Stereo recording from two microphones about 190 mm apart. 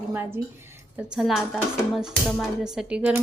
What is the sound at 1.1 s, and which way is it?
A woman's voice, 5° right (ahead or behind).